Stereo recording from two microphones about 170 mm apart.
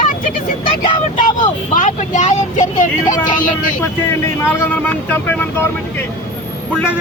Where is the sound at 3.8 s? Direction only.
15° left (ahead or behind).